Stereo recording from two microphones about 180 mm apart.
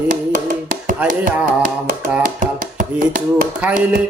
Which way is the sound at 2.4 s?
45° right (ahead or behind).